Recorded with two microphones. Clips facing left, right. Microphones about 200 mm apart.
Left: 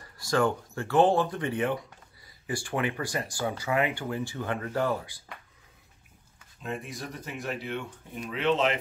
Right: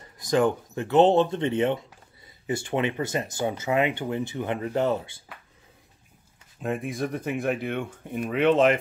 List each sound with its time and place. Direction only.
0.0 s speech: 20° right (ahead or behind)
6.6 s speech: 55° right (ahead or behind)